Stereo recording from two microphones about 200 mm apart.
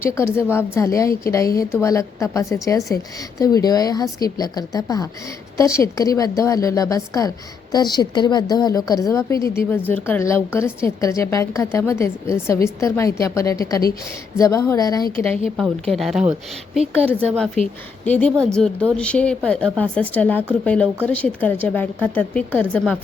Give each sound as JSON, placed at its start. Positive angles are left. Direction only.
{"t": 0.0, "sound": "a woman's voice", "side_deg": 15}
{"t": 15.0, "sound": "a woman's voice", "side_deg": 45}
{"t": 15.4, "sound": "a woman's voice", "side_deg": 0}